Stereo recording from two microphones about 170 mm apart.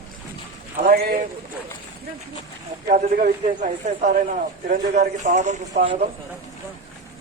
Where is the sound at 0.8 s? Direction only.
60° right (ahead or behind).